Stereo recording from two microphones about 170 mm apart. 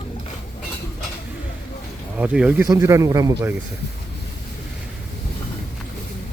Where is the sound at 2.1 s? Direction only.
5° right (ahead or behind).